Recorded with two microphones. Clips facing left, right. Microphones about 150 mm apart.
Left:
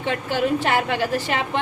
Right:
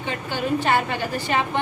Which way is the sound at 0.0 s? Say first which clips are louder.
Left 4 dB; 85° left.